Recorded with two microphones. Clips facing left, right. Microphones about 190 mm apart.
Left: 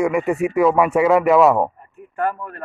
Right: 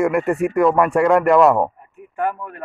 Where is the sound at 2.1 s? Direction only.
10° right (ahead or behind).